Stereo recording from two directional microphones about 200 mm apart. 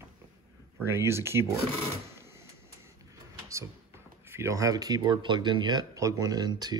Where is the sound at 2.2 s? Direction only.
15° right (ahead or behind).